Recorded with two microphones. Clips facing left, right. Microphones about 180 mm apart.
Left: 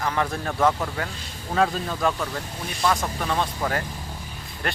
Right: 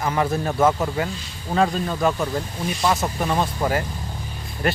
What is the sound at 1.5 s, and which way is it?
Speech, centre (ahead or behind).